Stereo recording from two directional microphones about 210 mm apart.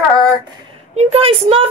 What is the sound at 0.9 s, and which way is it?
Speech, 30° right (ahead or behind).